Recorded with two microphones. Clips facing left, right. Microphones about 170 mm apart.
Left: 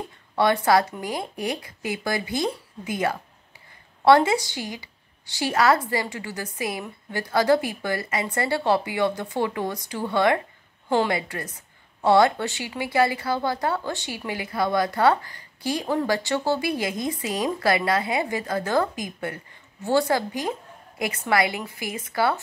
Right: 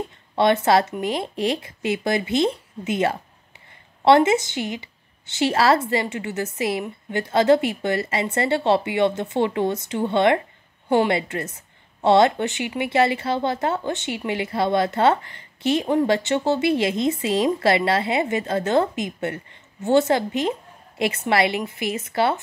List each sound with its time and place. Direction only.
0.4 s a woman's voice: 25° right (ahead or behind)